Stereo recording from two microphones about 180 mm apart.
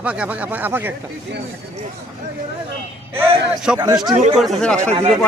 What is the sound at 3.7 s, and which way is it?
Speech, 5° right (ahead or behind).